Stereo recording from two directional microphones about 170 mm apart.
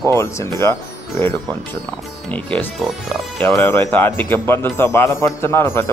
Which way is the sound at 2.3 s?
10° left (ahead or behind).